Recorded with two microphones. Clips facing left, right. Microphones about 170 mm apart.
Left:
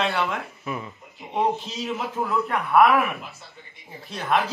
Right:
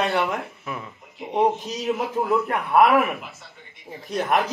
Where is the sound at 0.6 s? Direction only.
5° left (ahead or behind).